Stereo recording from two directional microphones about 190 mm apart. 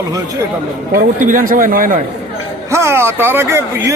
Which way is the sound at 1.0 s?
45° right (ahead or behind).